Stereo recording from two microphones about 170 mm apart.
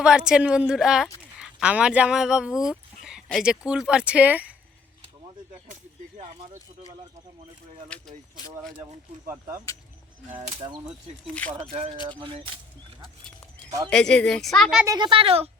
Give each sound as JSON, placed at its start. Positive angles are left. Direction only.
{"t": 0.0, "sound": "speech", "side_deg": -5}
{"t": 7.9, "sound": "speech", "side_deg": 5}
{"t": 11.5, "sound": "speech", "side_deg": -35}
{"t": 13.9, "sound": "speech", "side_deg": 5}
{"t": 14.8, "sound": "speech", "side_deg": -25}